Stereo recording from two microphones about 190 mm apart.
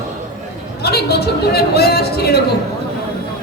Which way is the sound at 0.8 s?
55° left (ahead or behind).